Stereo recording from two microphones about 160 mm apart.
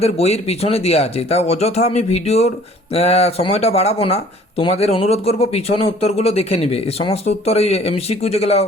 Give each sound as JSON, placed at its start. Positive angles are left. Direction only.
{"t": 0.0, "sound": "speech", "side_deg": 40}